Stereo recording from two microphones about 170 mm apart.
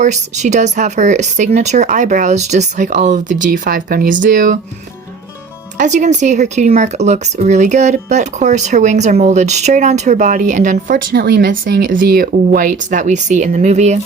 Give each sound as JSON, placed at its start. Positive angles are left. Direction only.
{"t": 0.0, "sound": "speech", "side_deg": -45}
{"t": 5.7, "sound": "speech", "side_deg": -45}
{"t": 10.9, "sound": "speech", "side_deg": -70}